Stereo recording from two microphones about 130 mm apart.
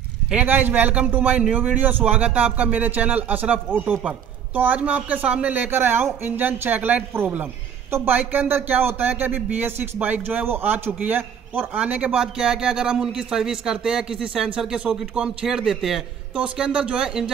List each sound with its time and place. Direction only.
0.3 s speech: 10° right (ahead or behind)